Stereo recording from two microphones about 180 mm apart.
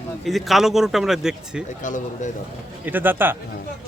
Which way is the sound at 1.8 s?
45° left (ahead or behind).